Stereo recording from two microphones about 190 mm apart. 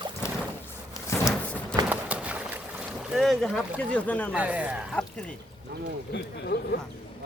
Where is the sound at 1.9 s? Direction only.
5° right (ahead or behind); by 4.3 s 10° left (ahead or behind).